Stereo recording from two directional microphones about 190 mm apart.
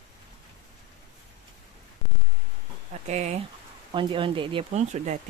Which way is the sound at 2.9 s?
35° right (ahead or behind).